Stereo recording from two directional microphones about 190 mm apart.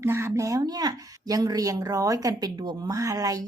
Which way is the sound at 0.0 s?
15° right (ahead or behind).